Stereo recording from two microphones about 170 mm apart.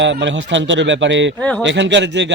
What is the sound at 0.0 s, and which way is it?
A man's voice, 90° right.